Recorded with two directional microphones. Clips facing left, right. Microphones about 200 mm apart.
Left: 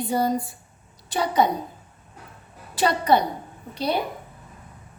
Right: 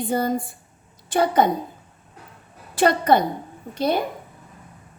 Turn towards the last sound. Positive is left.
turn(degrees=-50)  # may be behind; listen again after turning